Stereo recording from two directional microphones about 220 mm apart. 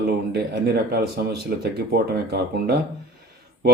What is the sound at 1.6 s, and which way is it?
Speech, 45° right (ahead or behind).